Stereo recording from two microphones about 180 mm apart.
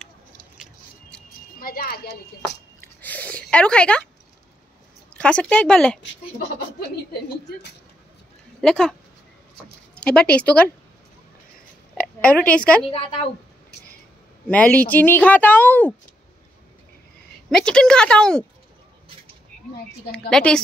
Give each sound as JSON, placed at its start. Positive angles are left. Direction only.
{"t": 0.6, "sound": "a sound", "side_deg": -5}
{"t": 1.6, "sound": "a child's voice", "side_deg": 60}
{"t": 2.8, "sound": "a sound", "side_deg": 10}
{"t": 5.1, "sound": "speech", "side_deg": 5}
{"t": 8.5, "sound": "speech", "side_deg": 5}
{"t": 10.0, "sound": "speech", "side_deg": 5}
{"t": 12.0, "sound": "speech", "side_deg": 5}
{"t": 14.5, "sound": "speech", "side_deg": 10}
{"t": 17.5, "sound": "speech", "side_deg": 5}
{"t": 20.1, "sound": "speech", "side_deg": 5}